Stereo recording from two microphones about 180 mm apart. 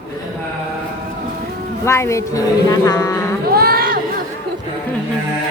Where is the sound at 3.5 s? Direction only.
60° right (ahead or behind).